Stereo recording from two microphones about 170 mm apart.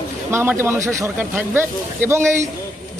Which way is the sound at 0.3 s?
15° right (ahead or behind).